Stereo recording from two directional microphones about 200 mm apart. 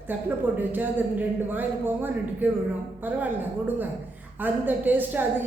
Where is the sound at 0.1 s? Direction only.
10° right (ahead or behind).